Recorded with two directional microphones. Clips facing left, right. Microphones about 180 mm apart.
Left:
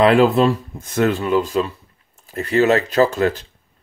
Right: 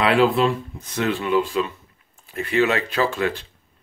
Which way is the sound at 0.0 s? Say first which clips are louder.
Left 4 dB; 40° left (ahead or behind).